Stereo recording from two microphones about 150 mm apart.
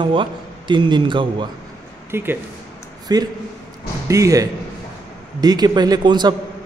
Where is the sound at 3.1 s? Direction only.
25° right (ahead or behind).